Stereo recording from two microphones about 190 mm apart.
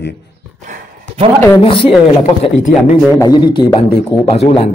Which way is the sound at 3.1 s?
20° left (ahead or behind).